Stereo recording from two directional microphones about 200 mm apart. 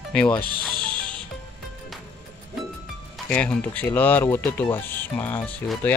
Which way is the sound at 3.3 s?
5° left (ahead or behind).